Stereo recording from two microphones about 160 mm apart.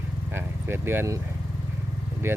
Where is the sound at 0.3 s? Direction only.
15° right (ahead or behind).